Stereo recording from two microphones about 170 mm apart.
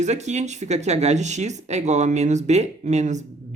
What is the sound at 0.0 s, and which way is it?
Speech, 45° right (ahead or behind).